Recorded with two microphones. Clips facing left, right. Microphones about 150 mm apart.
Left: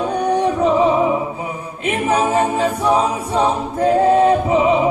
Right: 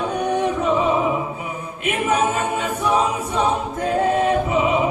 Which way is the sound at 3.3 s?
35° left (ahead or behind).